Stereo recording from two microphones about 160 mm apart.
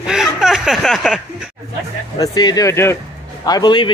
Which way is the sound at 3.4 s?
25° left (ahead or behind).